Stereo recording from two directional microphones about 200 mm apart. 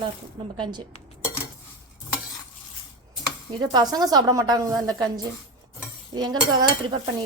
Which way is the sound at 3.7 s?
20° right (ahead or behind).